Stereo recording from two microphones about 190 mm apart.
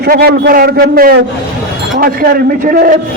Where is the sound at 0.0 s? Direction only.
55° right (ahead or behind).